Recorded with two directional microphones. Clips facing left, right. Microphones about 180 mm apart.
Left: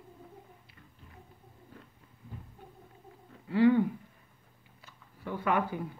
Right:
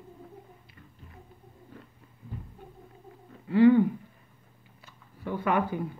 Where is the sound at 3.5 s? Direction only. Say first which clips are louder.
Right 5 dB; 50° right (ahead or behind).